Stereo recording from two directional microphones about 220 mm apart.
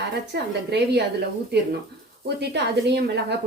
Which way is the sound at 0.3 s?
50° right (ahead or behind).